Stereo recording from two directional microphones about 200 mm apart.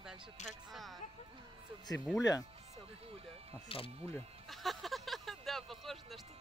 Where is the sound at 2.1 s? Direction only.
5° right (ahead or behind).